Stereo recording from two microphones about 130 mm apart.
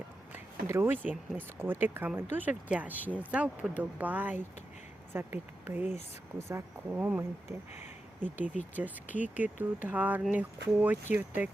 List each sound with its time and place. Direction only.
0.3 s speech: 15° right (ahead or behind)